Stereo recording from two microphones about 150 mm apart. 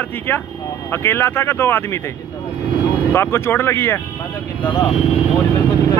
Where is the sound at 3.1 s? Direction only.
15° left (ahead or behind).